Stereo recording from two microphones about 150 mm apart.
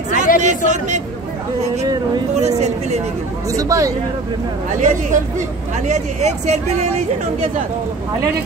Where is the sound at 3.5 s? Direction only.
20° right (ahead or behind).